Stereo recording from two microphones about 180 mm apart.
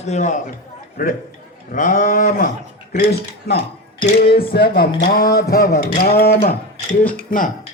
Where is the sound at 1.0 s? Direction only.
50° left (ahead or behind).